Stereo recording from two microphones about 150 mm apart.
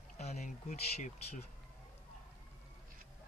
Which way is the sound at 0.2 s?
50° left (ahead or behind).